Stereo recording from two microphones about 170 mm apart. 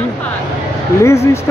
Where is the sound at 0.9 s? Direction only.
15° left (ahead or behind).